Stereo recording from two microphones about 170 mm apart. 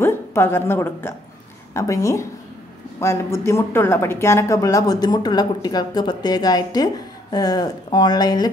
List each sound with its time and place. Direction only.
0.0 s a woman's voice: 15° left (ahead or behind)